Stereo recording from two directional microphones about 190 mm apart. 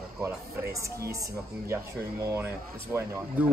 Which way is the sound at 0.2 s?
15° right (ahead or behind).